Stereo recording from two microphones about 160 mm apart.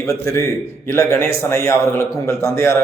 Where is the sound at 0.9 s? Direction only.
15° left (ahead or behind).